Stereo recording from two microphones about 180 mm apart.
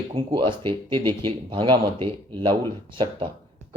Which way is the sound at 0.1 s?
30° right (ahead or behind).